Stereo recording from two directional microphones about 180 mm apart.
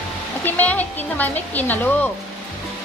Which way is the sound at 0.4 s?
10° left (ahead or behind).